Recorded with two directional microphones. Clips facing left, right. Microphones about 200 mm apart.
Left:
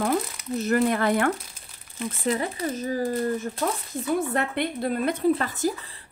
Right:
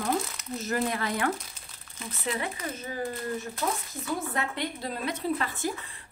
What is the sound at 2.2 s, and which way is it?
Speech, 40° left (ahead or behind).